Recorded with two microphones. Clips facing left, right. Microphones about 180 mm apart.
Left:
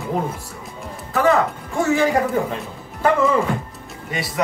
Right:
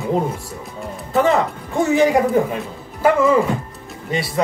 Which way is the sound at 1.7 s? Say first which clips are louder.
Right 3 dB; 20° right (ahead or behind).